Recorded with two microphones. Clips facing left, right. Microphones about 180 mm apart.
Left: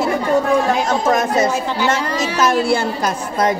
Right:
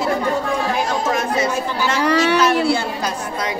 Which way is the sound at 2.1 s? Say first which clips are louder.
Right 5 dB; 70° right (ahead or behind).